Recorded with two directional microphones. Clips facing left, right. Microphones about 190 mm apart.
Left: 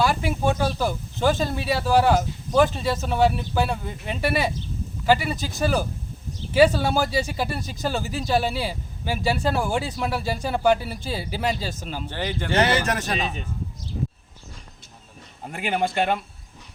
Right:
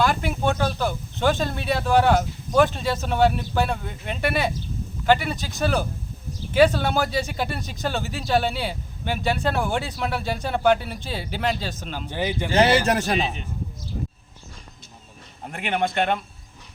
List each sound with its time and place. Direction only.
0.0 s speech: 5° left (ahead or behind)
12.0 s speech: 10° right (ahead or behind)
12.5 s speech: 30° right (ahead or behind)
15.4 s speech: 5° left (ahead or behind)